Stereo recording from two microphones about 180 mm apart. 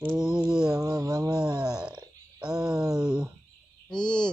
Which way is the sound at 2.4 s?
5° right (ahead or behind).